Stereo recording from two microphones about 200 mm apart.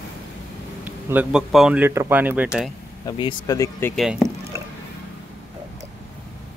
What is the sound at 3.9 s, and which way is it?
Speech, centre (ahead or behind).